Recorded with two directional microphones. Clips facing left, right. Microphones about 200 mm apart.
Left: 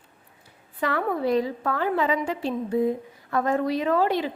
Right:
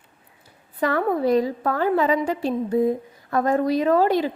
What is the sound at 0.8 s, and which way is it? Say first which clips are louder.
A woman's voice: right 4 dB; 40° right (ahead or behind).